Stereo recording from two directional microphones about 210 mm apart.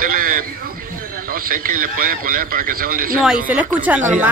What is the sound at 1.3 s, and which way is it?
A man's voice, 40° right (ahead or behind).